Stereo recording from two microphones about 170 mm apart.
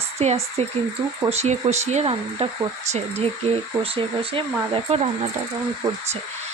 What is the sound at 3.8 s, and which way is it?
Speech, 35° right (ahead or behind).